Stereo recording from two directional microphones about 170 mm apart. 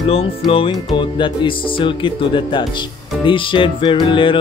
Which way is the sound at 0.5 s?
30° left (ahead or behind).